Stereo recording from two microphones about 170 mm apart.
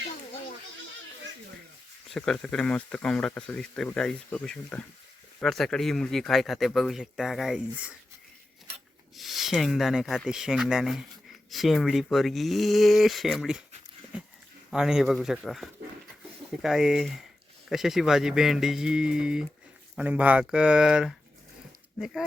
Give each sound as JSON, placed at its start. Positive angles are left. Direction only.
{"t": 2.0, "sound": "speech", "side_deg": 5}
{"t": 9.1, "sound": "speech", "side_deg": 0}
{"t": 14.7, "sound": "speech", "side_deg": -5}